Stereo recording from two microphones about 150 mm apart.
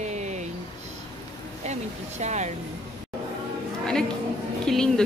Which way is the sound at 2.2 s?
50° right (ahead or behind).